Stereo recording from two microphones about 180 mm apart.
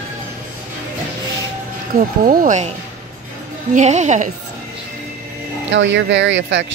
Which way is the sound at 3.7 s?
40° right (ahead or behind).